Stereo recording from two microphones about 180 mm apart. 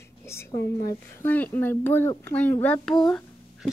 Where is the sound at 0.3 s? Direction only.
15° left (ahead or behind).